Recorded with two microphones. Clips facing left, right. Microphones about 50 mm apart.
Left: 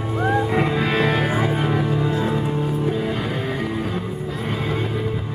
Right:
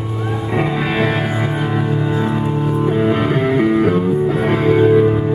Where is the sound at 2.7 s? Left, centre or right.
Right.